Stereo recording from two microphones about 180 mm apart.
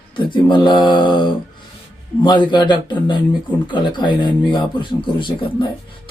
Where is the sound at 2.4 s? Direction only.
25° left (ahead or behind).